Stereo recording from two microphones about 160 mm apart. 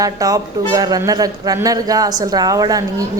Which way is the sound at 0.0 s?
20° right (ahead or behind).